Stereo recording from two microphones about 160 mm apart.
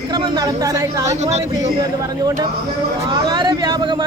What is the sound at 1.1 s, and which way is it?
Speech, 45° right (ahead or behind).